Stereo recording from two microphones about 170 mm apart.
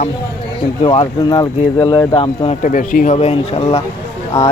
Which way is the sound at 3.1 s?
35° left (ahead or behind).